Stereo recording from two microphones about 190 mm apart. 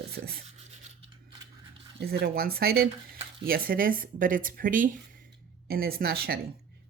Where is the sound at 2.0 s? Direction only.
55° right (ahead or behind).